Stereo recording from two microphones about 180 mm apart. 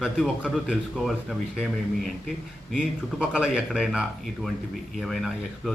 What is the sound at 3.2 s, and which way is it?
A man's voice, 5° right (ahead or behind).